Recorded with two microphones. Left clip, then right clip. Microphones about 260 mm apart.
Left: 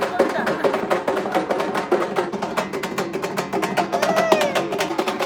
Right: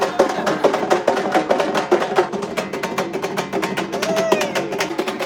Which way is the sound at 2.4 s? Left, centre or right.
Centre.